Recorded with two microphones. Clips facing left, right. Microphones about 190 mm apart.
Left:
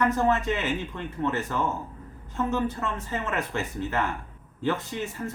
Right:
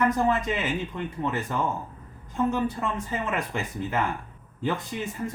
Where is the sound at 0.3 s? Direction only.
15° right (ahead or behind).